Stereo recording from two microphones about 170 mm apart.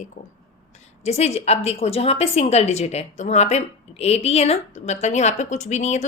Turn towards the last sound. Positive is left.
turn(degrees=40)  # may be behind; listen again after turning